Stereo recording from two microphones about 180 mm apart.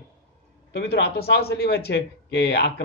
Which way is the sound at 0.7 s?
65° left (ahead or behind).